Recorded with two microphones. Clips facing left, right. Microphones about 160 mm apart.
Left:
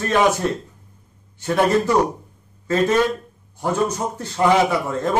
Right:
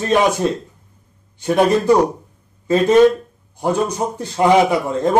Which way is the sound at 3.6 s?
15° right (ahead or behind).